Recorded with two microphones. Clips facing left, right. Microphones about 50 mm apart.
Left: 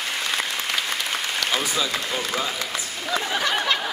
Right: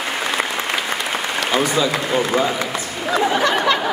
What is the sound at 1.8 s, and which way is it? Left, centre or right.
Speech, centre.